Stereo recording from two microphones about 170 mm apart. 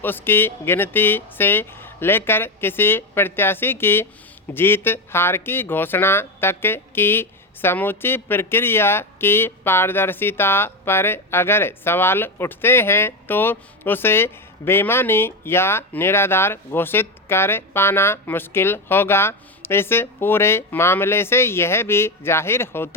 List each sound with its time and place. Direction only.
0.0 s speech: 10° left (ahead or behind)